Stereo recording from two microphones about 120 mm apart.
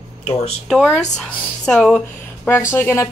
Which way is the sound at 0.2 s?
55° left (ahead or behind).